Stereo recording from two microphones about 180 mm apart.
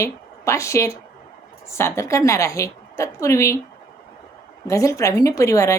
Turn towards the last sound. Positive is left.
turn(degrees=15)  # may be behind; listen again after turning